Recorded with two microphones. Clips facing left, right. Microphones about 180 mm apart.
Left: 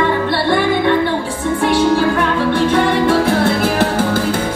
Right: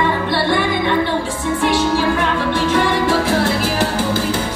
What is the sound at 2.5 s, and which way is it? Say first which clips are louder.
Music: left 2 dB; 55° left (ahead or behind).